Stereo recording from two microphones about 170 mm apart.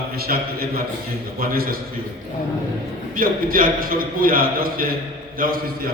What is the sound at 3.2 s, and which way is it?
A man's voice, 55° right (ahead or behind).